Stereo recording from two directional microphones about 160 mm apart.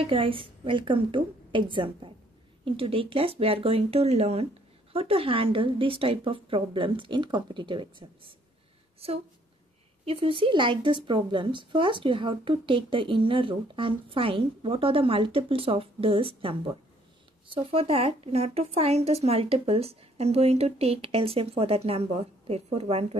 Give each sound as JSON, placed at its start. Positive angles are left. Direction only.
{"t": 0.0, "sound": "speech", "side_deg": -35}
{"t": 10.0, "sound": "speech", "side_deg": -35}